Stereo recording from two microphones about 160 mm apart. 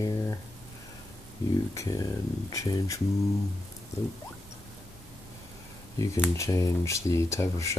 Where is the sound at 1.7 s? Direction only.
20° left (ahead or behind).